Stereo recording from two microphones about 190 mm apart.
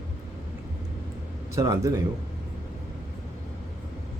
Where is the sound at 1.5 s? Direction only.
15° right (ahead or behind).